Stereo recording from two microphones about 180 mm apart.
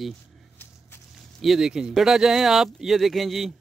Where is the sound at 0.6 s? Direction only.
10° left (ahead or behind).